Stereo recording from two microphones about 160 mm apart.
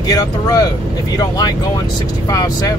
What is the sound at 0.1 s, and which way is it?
Speech, 20° left (ahead or behind).